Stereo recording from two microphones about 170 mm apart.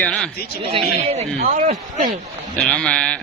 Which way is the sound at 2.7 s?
5° left (ahead or behind).